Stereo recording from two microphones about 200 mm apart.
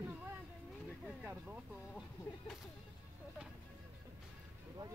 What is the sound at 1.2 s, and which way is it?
Speech, 5° right (ahead or behind).